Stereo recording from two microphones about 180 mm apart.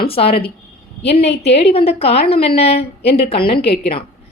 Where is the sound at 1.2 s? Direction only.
70° left (ahead or behind).